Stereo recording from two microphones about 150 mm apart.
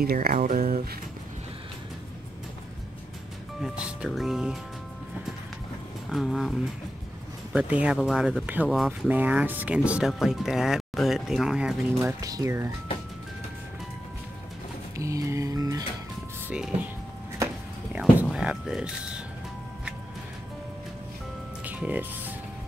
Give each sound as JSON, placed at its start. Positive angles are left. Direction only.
{"t": 0.0, "sound": "speech", "side_deg": -85}
{"t": 3.6, "sound": "speech", "side_deg": -5}
{"t": 6.0, "sound": "speech", "side_deg": 0}
{"t": 9.1, "sound": "speech", "side_deg": -10}
{"t": 12.2, "sound": "music", "side_deg": -25}
{"t": 15.0, "sound": "music", "side_deg": -20}
{"t": 16.4, "sound": "speech", "side_deg": -5}
{"t": 17.9, "sound": "speech", "side_deg": -5}
{"t": 21.6, "sound": "music", "side_deg": -10}